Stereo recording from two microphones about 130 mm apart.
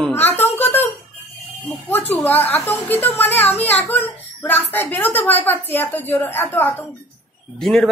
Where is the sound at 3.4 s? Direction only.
50° left (ahead or behind).